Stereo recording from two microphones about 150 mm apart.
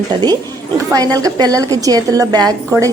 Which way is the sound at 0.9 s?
25° right (ahead or behind).